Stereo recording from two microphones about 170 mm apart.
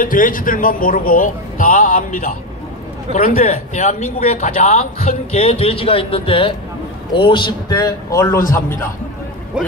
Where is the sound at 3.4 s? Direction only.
40° left (ahead or behind); by 8.4 s 20° left (ahead or behind).